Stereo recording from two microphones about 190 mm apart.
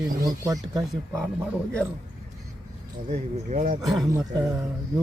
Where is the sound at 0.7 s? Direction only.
15° right (ahead or behind).